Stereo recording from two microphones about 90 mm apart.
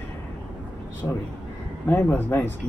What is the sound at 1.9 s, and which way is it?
Speech, 25° left (ahead or behind).